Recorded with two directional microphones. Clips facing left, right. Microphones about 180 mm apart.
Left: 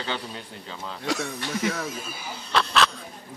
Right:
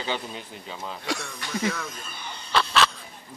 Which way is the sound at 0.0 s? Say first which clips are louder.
Right 1 dB; 10° right (ahead or behind).